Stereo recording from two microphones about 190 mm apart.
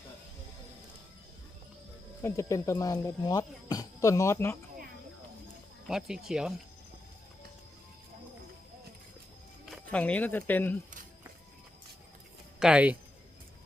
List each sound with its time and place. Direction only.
2.2 s speech: 15° left (ahead or behind)
5.9 s speech: centre (ahead or behind)
9.6 s speech: 5° left (ahead or behind)
12.5 s speech: 5° right (ahead or behind)